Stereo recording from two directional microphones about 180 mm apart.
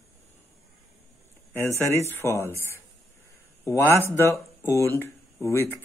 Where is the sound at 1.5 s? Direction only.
15° left (ahead or behind).